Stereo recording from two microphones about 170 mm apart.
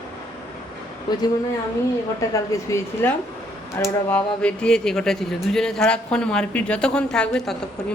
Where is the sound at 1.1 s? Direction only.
25° left (ahead or behind).